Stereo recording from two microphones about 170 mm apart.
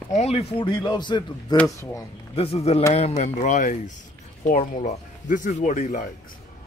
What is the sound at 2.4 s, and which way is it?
A man's voice, 35° left (ahead or behind).